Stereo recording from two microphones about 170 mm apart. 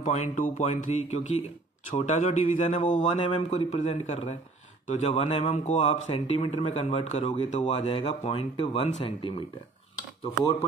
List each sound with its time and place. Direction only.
0.0 s a man's voice: 45° left (ahead or behind)
3.2 s speech: 35° left (ahead or behind)